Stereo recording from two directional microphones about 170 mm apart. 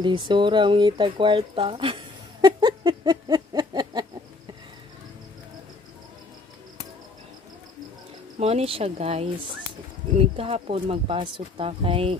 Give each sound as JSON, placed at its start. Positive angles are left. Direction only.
{"t": 0.0, "sound": "speech", "side_deg": -30}
{"t": 8.4, "sound": "speech", "side_deg": -35}